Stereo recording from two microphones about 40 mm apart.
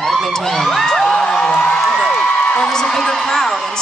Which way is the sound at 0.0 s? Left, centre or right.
Centre.